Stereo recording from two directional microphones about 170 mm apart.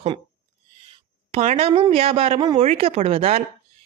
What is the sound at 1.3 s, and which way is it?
A woman's voice, 35° right (ahead or behind).